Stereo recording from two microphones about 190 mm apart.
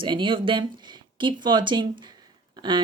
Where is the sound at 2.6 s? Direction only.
25° right (ahead or behind).